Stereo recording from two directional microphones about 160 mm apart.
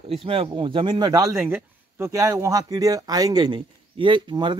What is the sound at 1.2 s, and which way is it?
Speech, 10° right (ahead or behind).